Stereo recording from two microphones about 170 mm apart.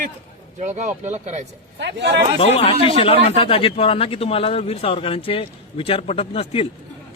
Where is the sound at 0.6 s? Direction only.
45° right (ahead or behind).